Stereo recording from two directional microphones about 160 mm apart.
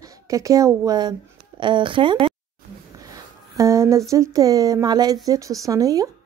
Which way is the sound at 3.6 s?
20° right (ahead or behind).